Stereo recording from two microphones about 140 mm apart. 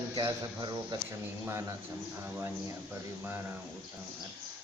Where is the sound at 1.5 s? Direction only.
20° right (ahead or behind).